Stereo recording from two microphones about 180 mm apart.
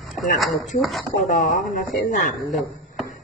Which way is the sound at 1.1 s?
45° left (ahead or behind).